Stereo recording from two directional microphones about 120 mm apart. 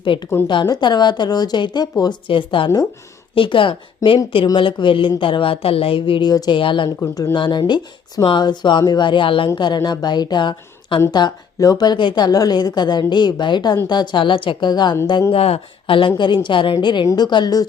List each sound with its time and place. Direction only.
0.0 s a woman's voice: 45° left (ahead or behind)
7.0 s a woman's voice: 30° left (ahead or behind)
7.3 s a woman's voice: 45° left (ahead or behind)
15.3 s a woman's voice: 55° left (ahead or behind); by 17.7 s 35° left (ahead or behind)